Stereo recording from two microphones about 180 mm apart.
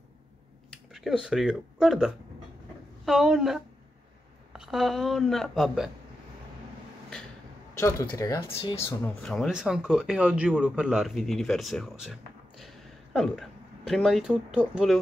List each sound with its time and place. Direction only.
0.9 s speech: 5° right (ahead or behind)
7.8 s speech: 15° left (ahead or behind)
9.2 s speech: centre (ahead or behind)